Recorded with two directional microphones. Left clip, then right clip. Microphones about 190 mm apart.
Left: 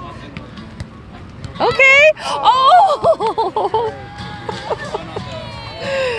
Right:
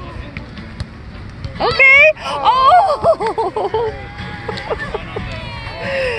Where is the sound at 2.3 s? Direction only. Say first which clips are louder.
Even; 15° left (ahead or behind).